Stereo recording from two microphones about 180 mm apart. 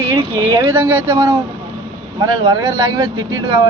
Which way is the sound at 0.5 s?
10° right (ahead or behind).